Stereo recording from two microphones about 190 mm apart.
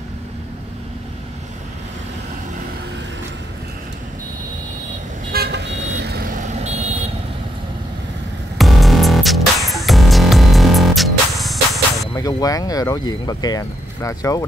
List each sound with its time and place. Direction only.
5.3 s vehicle: 60° right (ahead or behind); by 7.0 s 35° right (ahead or behind)
8.5 s music: centre (ahead or behind)
12.2 s speech: 20° left (ahead or behind)